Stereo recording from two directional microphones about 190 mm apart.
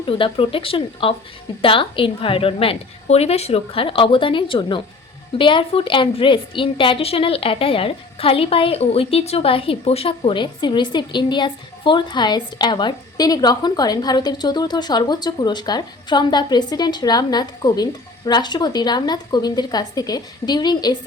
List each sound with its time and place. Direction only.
0.0 s a woman's voice: 25° left (ahead or behind)